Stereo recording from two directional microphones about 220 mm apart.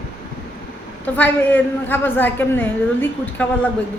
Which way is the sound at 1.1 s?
10° left (ahead or behind).